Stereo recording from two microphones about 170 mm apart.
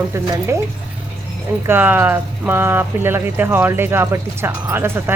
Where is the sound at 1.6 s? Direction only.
10° right (ahead or behind).